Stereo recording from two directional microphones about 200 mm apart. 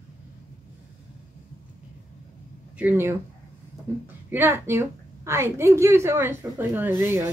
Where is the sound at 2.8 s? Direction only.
10° right (ahead or behind).